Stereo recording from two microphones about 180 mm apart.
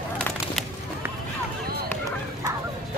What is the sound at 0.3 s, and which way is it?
Bird, 10° left (ahead or behind).